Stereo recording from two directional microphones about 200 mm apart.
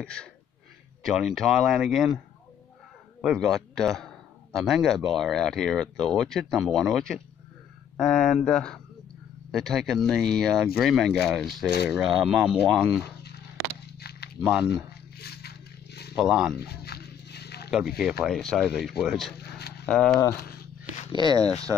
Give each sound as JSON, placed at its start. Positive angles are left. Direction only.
{"t": 0.0, "sound": "a man's voice", "side_deg": 5}
{"t": 3.2, "sound": "a man's voice", "side_deg": 0}
{"t": 13.9, "sound": "biting", "side_deg": 55}
{"t": 14.4, "sound": "a man's voice", "side_deg": -5}
{"t": 15.1, "sound": "a sound", "side_deg": 55}
{"t": 16.2, "sound": "a man's voice", "side_deg": -5}
{"t": 16.5, "sound": "dog", "side_deg": 50}
{"t": 17.6, "sound": "a man's voice", "side_deg": -5}
{"t": 20.5, "sound": "a sound", "side_deg": 40}
{"t": 21.1, "sound": "speech", "side_deg": -20}